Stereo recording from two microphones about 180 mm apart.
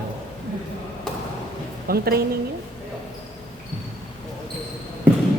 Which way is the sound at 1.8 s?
60° right (ahead or behind).